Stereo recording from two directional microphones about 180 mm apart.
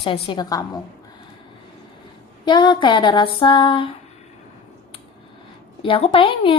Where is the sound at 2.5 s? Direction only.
25° left (ahead or behind).